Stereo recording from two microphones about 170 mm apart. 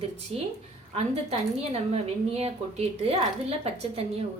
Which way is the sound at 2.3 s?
35° right (ahead or behind).